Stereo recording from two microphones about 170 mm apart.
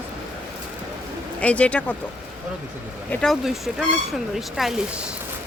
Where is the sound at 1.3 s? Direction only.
10° left (ahead or behind).